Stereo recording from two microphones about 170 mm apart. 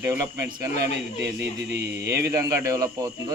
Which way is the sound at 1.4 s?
75° right (ahead or behind).